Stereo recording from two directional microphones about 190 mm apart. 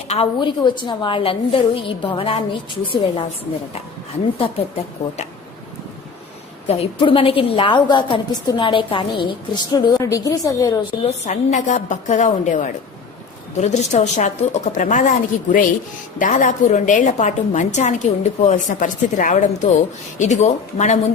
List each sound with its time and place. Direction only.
0.1 s a woman's voice: 25° left (ahead or behind)
4.4 s a woman's voice: 30° left (ahead or behind)
6.7 s a woman's voice: 30° left (ahead or behind)
11.0 s a woman's voice: 40° left (ahead or behind)